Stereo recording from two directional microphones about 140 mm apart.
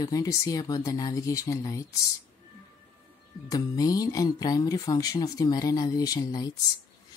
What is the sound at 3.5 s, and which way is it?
Speech, 25° left (ahead or behind).